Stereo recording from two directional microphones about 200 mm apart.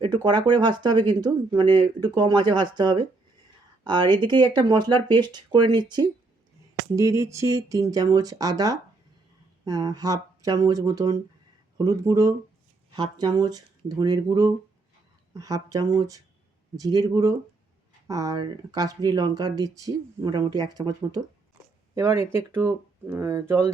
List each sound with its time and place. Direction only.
0.0 s speech: 20° right (ahead or behind)
3.8 s speech: 20° right (ahead or behind)
21.9 s speech: 10° right (ahead or behind)